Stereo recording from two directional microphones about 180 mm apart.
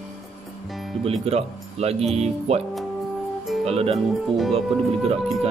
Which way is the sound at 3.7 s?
35° right (ahead or behind).